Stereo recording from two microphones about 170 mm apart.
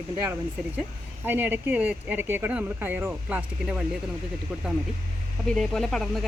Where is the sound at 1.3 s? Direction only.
10° right (ahead or behind).